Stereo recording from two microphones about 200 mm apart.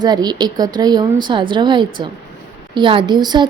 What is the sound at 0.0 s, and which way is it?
A woman's voice, 20° right (ahead or behind).